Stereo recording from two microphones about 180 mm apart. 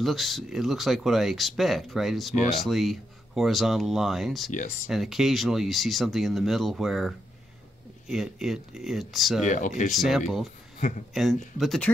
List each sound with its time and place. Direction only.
0.0 s speech: centre (ahead or behind)
9.5 s speech: 45° left (ahead or behind)
9.9 s speech: centre (ahead or behind)